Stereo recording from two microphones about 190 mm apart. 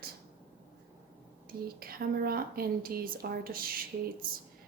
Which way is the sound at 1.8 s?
50° right (ahead or behind).